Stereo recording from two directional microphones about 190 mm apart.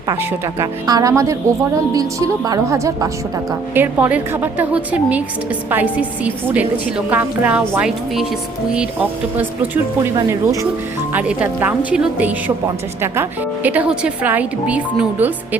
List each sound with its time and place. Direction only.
0.1 s speech: 20° right (ahead or behind)